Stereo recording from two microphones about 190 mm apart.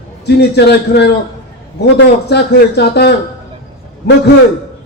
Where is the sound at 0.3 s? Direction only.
60° left (ahead or behind).